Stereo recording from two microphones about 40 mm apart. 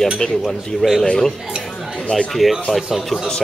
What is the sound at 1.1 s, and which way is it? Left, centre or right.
Speech, centre.